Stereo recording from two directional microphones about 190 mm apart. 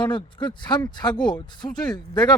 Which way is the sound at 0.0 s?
25° left (ahead or behind).